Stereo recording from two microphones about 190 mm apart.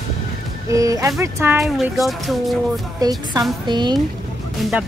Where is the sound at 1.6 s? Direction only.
Centre (ahead or behind).